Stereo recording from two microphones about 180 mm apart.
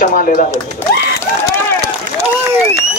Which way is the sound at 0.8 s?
15° left (ahead or behind).